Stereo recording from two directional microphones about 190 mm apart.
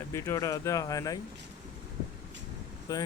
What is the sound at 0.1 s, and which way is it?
Speech, 15° left (ahead or behind).